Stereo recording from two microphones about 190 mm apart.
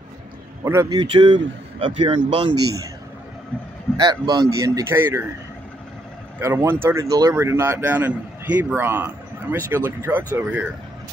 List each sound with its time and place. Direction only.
0.7 s speech: 20° right (ahead or behind)
4.0 s speech: 20° right (ahead or behind)
6.4 s speech: 15° right (ahead or behind)